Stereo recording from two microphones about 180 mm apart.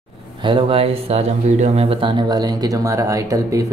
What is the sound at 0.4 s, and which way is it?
Speech, 30° right (ahead or behind).